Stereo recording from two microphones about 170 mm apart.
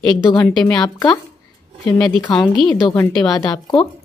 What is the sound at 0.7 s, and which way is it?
Speech, 25° left (ahead or behind).